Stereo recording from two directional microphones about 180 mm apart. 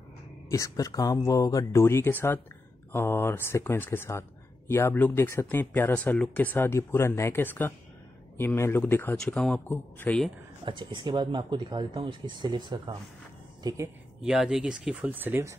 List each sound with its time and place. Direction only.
0.5 s speech: 20° left (ahead or behind)
10.6 s speech: 25° right (ahead or behind)
14.2 s speech: 5° right (ahead or behind)